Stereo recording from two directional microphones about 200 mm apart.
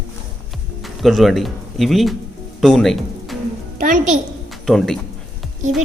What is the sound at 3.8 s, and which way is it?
Speech, 40° right (ahead or behind).